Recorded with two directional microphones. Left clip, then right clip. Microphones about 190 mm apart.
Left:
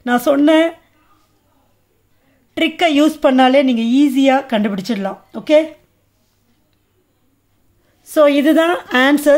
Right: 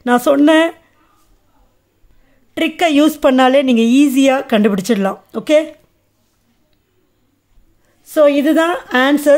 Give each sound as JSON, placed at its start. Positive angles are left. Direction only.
{"t": 0.0, "sound": "a woman's voice", "side_deg": -20}
{"t": 2.5, "sound": "a woman's voice", "side_deg": -15}
{"t": 8.0, "sound": "a woman's voice", "side_deg": 0}